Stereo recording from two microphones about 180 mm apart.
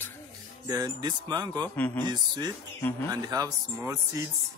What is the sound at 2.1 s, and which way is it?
Speech, 25° right (ahead or behind).